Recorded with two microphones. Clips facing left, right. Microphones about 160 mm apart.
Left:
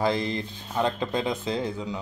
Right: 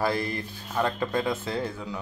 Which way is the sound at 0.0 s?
20° left (ahead or behind).